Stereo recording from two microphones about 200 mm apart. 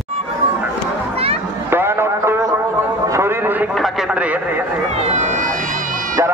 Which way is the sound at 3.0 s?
15° right (ahead or behind).